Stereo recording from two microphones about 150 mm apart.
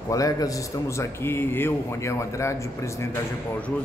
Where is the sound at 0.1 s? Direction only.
25° left (ahead or behind).